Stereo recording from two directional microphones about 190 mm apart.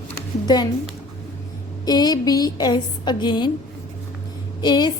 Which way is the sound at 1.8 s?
20° left (ahead or behind).